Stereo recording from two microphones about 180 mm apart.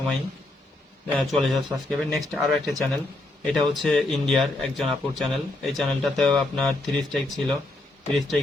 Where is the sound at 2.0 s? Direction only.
Centre (ahead or behind).